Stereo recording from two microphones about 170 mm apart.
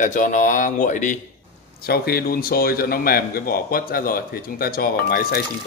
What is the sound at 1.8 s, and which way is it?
A man's voice, 65° left (ahead or behind).